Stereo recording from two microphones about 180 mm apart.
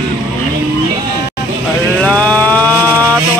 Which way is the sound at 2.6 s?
15° right (ahead or behind).